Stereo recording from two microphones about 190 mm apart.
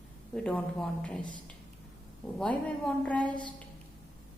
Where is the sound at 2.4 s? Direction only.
5° left (ahead or behind).